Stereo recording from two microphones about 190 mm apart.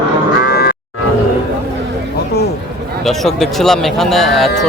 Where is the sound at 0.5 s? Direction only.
60° left (ahead or behind).